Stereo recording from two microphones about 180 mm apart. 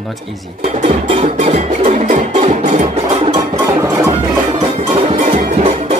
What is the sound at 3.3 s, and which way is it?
Music, 15° right (ahead or behind).